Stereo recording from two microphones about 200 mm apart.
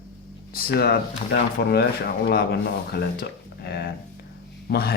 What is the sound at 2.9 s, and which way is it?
Speech, 55° left (ahead or behind).